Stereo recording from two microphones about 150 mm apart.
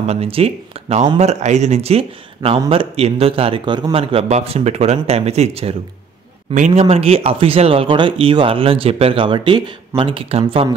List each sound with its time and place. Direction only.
0.0 s speech: 45° right (ahead or behind)